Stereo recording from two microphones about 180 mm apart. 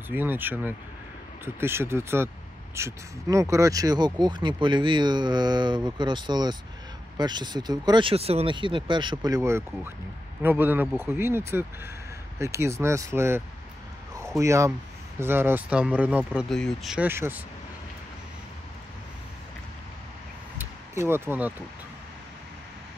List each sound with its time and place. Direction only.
0.1 s speech: 10° right (ahead or behind)
14.4 s speech: 15° right (ahead or behind)
20.5 s a sound: 15° right (ahead or behind)